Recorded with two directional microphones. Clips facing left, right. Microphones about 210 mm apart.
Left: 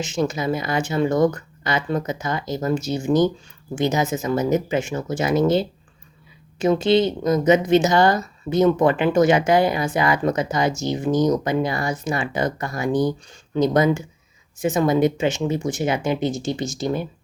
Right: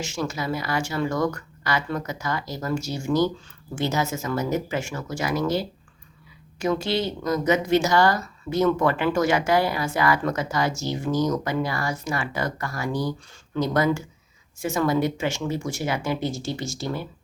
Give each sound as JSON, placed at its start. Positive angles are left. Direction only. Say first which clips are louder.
{"t": 0.0, "sound": "speech", "louder": "left 6 dB", "side_deg": 20}